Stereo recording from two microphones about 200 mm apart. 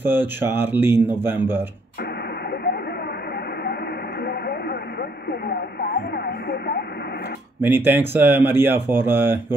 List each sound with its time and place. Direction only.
0.0 s speech: 10° right (ahead or behind)
4.3 s radio: 55° left (ahead or behind)
7.6 s speech: 10° right (ahead or behind)